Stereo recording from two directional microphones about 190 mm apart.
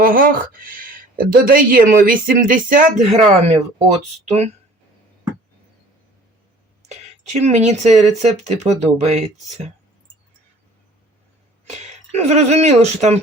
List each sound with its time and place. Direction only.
0.0 s speech: 50° right (ahead or behind)
7.3 s speech: 35° right (ahead or behind)
11.6 s speech: 35° right (ahead or behind)